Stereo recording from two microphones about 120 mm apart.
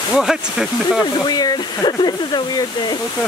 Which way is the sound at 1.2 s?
35° left (ahead or behind).